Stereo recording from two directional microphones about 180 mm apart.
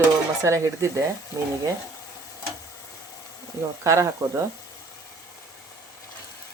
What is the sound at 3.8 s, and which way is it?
Speech, 15° right (ahead or behind).